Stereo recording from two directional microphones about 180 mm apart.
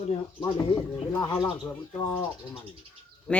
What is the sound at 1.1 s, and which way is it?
Speech, 20° left (ahead or behind).